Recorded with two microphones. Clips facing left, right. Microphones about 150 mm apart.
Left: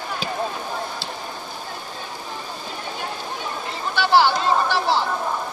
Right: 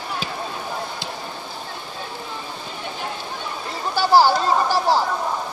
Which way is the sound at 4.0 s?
40° right (ahead or behind).